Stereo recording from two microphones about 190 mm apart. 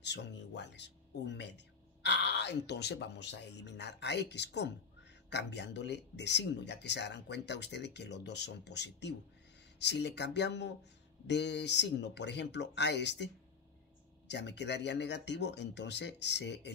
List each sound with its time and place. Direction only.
0.0 s speech: 65° left (ahead or behind)